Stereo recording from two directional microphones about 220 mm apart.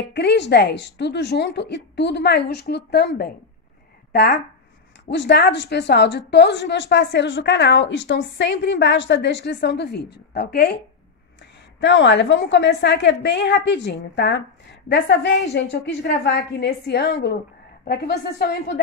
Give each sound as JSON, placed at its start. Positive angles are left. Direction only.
{"t": 0.1, "sound": "a woman's voice", "side_deg": 50}
{"t": 11.8, "sound": "a woman's voice", "side_deg": 55}